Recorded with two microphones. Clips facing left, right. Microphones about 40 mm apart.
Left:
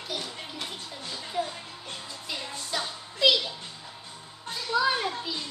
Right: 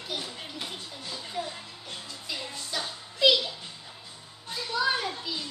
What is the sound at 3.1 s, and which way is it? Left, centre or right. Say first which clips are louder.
Music: even; centre.